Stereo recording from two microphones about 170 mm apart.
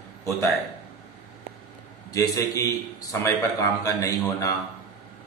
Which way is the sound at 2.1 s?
20° left (ahead or behind).